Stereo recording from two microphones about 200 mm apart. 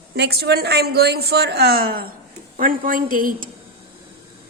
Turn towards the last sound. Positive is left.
turn(degrees=-45)  # may be behind; listen again after turning